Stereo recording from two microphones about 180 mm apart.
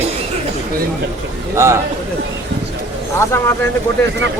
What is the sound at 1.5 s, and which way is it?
Speech, 15° right (ahead or behind).